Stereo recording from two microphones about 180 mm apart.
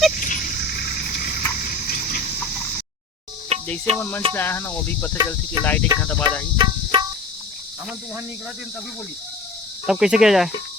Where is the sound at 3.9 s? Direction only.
10° left (ahead or behind).